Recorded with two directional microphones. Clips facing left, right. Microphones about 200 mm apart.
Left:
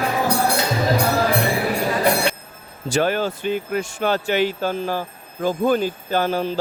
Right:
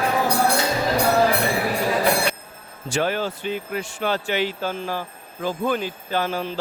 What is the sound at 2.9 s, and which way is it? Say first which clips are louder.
Speech: left 3 dB; 45° left (ahead or behind).